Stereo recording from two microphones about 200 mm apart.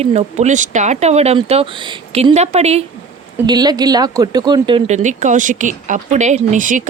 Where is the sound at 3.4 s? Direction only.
20° right (ahead or behind); by 6.8 s 40° right (ahead or behind).